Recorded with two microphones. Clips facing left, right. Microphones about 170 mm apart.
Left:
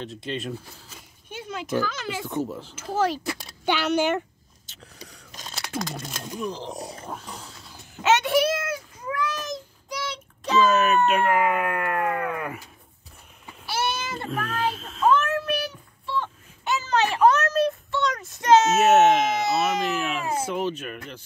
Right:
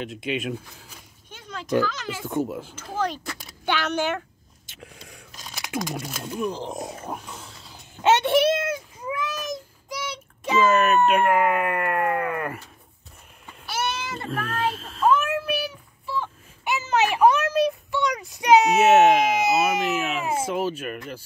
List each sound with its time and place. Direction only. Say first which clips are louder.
0.0 s speech: right 3 dB; 10° right (ahead or behind)
1.3 s speech: right 3 dB; 5° left (ahead or behind)
2.2 s speech: right 5 dB; 10° right (ahead or behind)
2.7 s speech: left 3 dB; 5° left (ahead or behind)
5.3 s a sound: right 2 dB; 15° right (ahead or behind)
6.4 s speech: right 3 dB; 10° right (ahead or behind)
8.0 s a sound: right 2 dB; 30° right (ahead or behind)
9.9 s child singing: left 1 dB; 15° right (ahead or behind)
10.7 s speech: right 1 dB; centre (ahead or behind)
13.7 s a sound: left 1 dB; 30° left (ahead or behind)
14.0 s child singing: even; centre (ahead or behind); by 18.2 s 15° right (ahead or behind)
18.3 s speech: right 1 dB; 15° right (ahead or behind)
18.7 s speech: right 1 dB; centre (ahead or behind)